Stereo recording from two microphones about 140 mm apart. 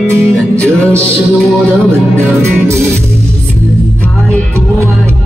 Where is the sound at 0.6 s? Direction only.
5° left (ahead or behind).